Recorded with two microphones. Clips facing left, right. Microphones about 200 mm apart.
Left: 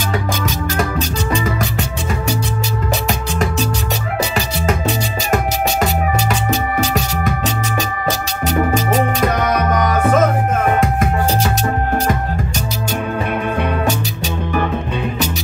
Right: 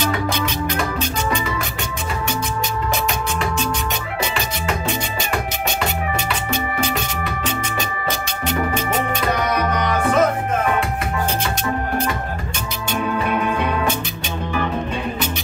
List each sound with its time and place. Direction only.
6.8 s music: 40° left (ahead or behind)